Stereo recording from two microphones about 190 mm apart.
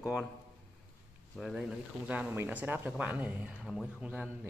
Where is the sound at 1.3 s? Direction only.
Centre (ahead or behind).